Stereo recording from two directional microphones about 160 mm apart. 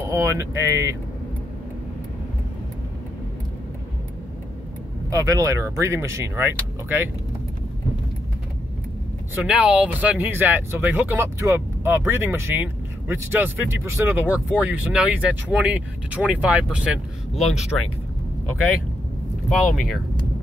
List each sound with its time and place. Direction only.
0.1 s speech: 15° right (ahead or behind)
5.1 s speech: 20° right (ahead or behind)
9.3 s speech: 5° right (ahead or behind)
17.7 s speech: 10° left (ahead or behind)
19.5 s speech: centre (ahead or behind)